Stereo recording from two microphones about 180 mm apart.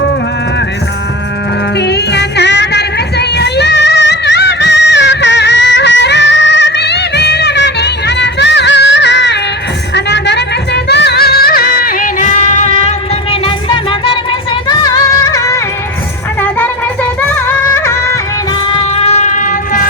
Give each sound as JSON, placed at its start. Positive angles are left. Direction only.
{"t": 1.7, "sound": "music", "side_deg": 70}
{"t": 14.7, "sound": "music", "side_deg": 20}
{"t": 18.7, "sound": "a sound", "side_deg": 35}